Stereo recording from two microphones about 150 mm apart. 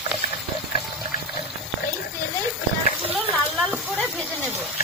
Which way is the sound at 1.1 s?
90° left.